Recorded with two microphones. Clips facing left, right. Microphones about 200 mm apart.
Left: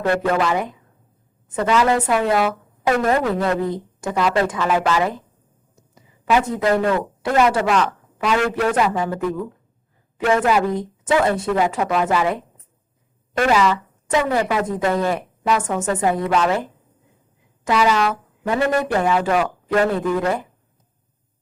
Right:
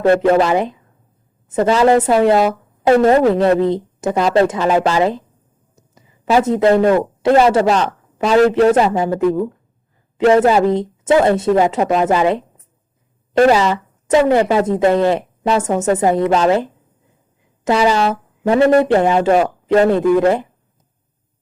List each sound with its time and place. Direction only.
0.1 s a man's voice: 30° right (ahead or behind)
6.3 s a man's voice: 25° right (ahead or behind)
10.2 s a man's voice: 35° right (ahead or behind)
17.7 s speech: 30° right (ahead or behind)